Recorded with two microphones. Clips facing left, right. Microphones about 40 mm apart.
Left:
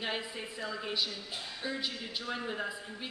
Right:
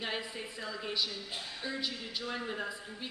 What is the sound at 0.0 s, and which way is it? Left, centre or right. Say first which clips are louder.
Speech: left 1 dB; centre.